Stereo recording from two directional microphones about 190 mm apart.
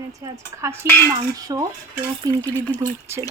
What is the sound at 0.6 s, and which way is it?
A woman's voice, 15° right (ahead or behind).